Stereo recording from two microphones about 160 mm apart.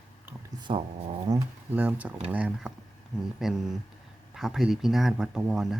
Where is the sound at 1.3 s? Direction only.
25° right (ahead or behind).